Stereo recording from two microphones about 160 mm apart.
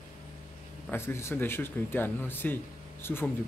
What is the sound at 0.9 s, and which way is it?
Speech, 15° left (ahead or behind).